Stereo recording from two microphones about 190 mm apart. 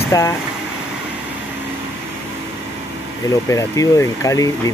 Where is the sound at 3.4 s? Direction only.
15° left (ahead or behind).